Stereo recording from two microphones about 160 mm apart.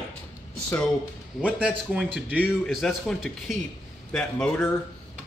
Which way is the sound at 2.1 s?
5° right (ahead or behind).